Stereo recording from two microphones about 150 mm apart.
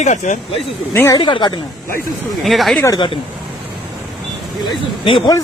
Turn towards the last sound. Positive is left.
turn(degrees=35)  # may be behind; listen again after turning